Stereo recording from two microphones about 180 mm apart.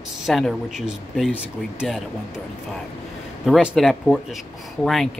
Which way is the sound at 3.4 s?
Centre (ahead or behind).